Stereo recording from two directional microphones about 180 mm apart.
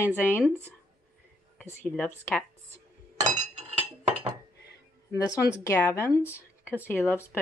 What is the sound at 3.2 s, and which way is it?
Chink, 40° right (ahead or behind).